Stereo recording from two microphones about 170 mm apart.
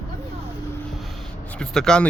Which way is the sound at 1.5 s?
5° left (ahead or behind).